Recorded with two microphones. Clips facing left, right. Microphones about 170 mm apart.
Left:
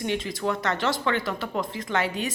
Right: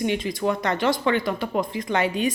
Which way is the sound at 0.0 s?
15° right (ahead or behind).